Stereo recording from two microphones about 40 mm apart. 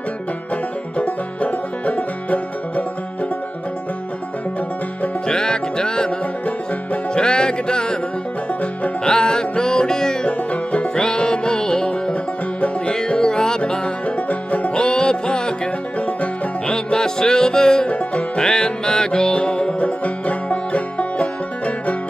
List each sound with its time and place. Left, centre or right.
0.9 s music: left
5.2 s music: centre
7.2 s music: centre
9.0 s music: centre
10.2 s music: left
12.5 s music: left
12.9 s music: centre
14.0 s music: left
14.8 s music: left
16.1 s music: left
16.7 s music: centre
17.8 s music: left
18.4 s music: centre
19.8 s music: left